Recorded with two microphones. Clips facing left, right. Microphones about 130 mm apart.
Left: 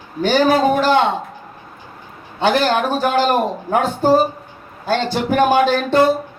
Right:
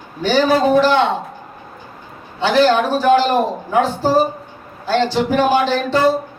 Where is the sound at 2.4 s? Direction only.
50° left (ahead or behind).